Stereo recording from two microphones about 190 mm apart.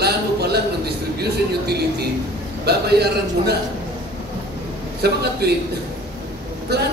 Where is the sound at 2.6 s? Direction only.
60° right (ahead or behind).